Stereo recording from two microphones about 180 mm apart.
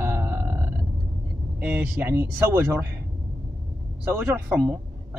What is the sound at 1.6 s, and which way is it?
A man's voice, 10° right (ahead or behind).